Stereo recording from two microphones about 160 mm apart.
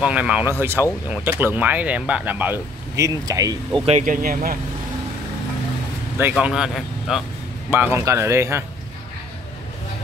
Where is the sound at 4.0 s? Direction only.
60° right (ahead or behind).